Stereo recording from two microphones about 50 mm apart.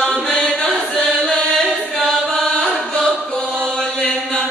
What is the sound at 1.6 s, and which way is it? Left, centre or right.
Chant, centre.